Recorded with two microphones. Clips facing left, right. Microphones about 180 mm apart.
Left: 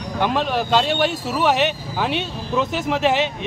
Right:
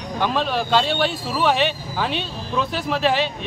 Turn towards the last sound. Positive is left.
turn(degrees=15)  # may be behind; listen again after turning